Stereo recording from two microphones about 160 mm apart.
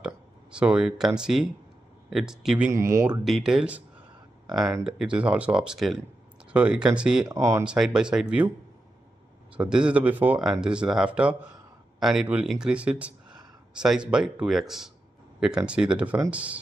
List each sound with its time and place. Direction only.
0.0 s speech: 5° right (ahead or behind)
2.7 s speech: 20° right (ahead or behind)
3.1 s speech: centre (ahead or behind)
7.2 s speech: 20° right (ahead or behind)
7.6 s speech: 5° right (ahead or behind)
9.6 s speech: 5° right (ahead or behind)